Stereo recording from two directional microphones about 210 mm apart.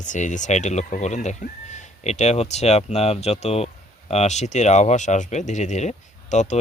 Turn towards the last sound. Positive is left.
turn(degrees=35)  # may be behind; listen again after turning